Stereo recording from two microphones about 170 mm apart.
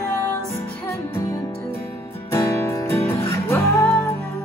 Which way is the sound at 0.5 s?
15° left (ahead or behind).